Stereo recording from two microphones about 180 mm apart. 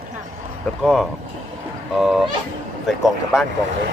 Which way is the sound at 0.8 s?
Centre (ahead or behind).